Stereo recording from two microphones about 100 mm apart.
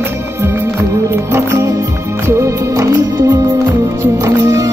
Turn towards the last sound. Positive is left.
turn(degrees=-30)  # may be behind; listen again after turning